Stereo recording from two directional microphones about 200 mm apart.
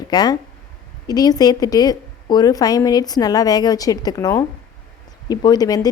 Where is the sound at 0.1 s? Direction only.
20° left (ahead or behind).